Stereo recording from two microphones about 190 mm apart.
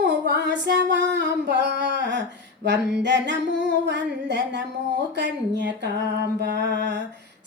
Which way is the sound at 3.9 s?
65° right (ahead or behind).